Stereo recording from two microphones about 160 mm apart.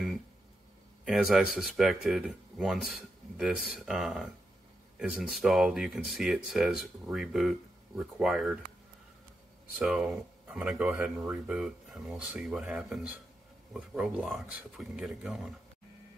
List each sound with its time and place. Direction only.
1.0 s speech: centre (ahead or behind)
9.8 s speech: 5° right (ahead or behind)